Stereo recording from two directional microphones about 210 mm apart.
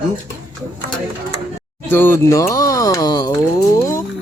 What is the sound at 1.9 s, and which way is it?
Speech, 10° left (ahead or behind).